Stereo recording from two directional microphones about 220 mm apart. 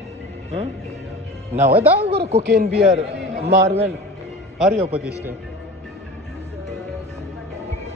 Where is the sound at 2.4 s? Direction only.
45° right (ahead or behind).